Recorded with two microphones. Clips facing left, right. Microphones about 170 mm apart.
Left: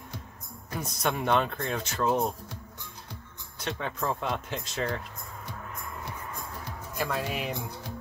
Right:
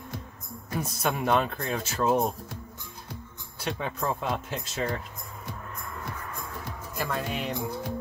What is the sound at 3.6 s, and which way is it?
Speech, 10° right (ahead or behind).